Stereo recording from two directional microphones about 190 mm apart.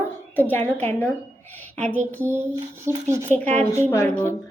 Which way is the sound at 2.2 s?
10° right (ahead or behind).